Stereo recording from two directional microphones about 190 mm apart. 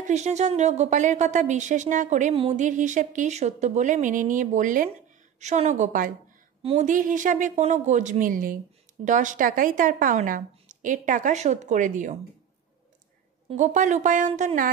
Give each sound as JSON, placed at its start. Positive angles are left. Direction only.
{"t": 0.0, "sound": "a woman's voice", "side_deg": -35}
{"t": 6.6, "sound": "a woman's voice", "side_deg": -30}
{"t": 6.9, "sound": "speech", "side_deg": -45}
{"t": 13.5, "sound": "a woman's voice", "side_deg": -40}